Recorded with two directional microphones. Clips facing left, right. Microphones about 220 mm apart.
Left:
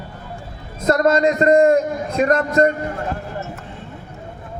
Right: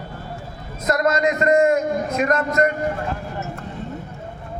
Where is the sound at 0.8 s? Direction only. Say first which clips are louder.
Left 4 dB; 30° left (ahead or behind).